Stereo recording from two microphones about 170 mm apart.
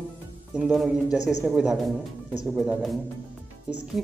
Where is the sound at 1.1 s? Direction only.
45° left (ahead or behind).